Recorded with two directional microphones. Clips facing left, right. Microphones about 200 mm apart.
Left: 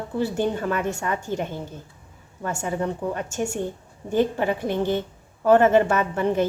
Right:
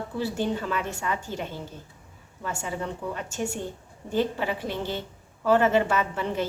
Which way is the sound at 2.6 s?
50° left (ahead or behind).